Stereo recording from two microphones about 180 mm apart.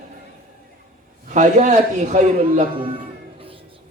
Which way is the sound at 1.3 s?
45° right (ahead or behind).